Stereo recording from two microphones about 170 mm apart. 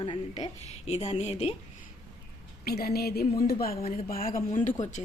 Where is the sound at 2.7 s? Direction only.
65° left (ahead or behind).